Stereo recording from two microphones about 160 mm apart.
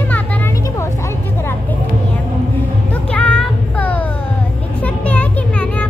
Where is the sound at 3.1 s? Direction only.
10° left (ahead or behind).